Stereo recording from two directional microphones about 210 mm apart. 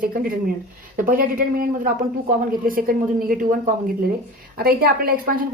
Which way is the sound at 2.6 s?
45° right (ahead or behind).